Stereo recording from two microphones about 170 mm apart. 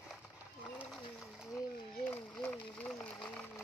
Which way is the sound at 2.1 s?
10° left (ahead or behind).